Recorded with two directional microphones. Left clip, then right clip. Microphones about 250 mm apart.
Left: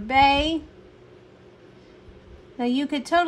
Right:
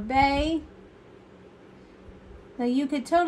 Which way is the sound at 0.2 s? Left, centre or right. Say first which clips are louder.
Left 5 dB; centre.